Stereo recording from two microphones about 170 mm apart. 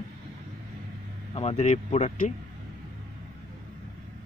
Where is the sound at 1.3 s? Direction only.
40° left (ahead or behind).